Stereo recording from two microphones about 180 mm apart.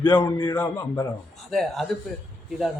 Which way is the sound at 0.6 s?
10° left (ahead or behind).